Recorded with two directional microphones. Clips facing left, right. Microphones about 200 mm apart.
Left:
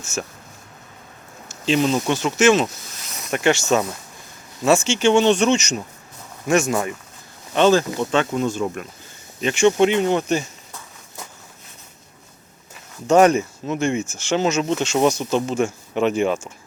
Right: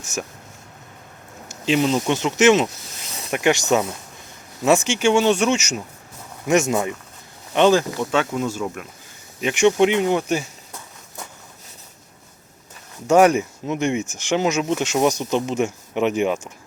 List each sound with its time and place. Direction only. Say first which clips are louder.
0.0 s speech: left 1 dB; 15° right (ahead or behind)
1.5 s speech: even; 15° right (ahead or behind)
6.5 s speech: right 1 dB; 20° right (ahead or behind); by 8.9 s 5° right (ahead or behind)
9.4 s speech: even; 15° right (ahead or behind)
13.1 s speech: even; 10° right (ahead or behind)